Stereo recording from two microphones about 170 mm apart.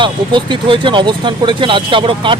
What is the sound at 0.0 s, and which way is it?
Speech, 30° right (ahead or behind).